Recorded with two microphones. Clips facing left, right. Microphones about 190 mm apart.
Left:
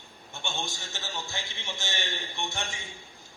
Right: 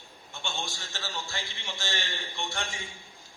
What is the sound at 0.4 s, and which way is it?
A man's voice, 20° left (ahead or behind).